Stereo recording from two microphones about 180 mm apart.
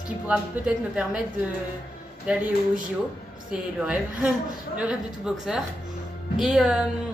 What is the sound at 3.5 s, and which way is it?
A woman's voice, 5° right (ahead or behind).